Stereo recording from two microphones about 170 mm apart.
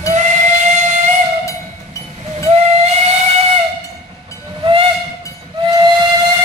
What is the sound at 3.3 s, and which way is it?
Steam whistle, 35° right (ahead or behind).